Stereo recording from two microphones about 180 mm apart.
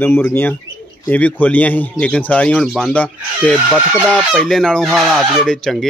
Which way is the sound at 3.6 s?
5° right (ahead or behind).